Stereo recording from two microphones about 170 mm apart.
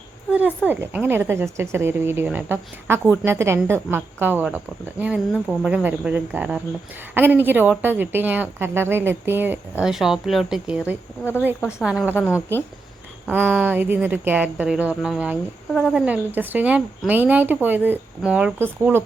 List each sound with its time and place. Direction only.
0.3 s speech: 10° right (ahead or behind)
12.0 s a woman's voice: 10° left (ahead or behind)
13.3 s speech: 10° right (ahead or behind)